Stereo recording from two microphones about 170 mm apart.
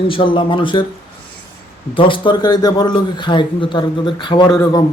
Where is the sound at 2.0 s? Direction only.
30° left (ahead or behind).